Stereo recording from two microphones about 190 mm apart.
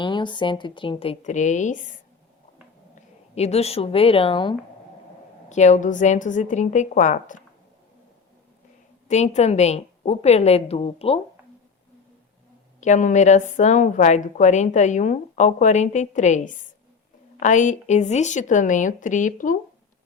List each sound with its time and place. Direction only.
0.0 s a woman's voice: 25° left (ahead or behind); by 1.9 s 40° left (ahead or behind)
2.9 s a woman's voice: 35° left (ahead or behind)
5.5 s a woman's voice: 40° left (ahead or behind)
9.0 s a woman's voice: 35° left (ahead or behind)
12.8 s a woman's voice: 40° left (ahead or behind)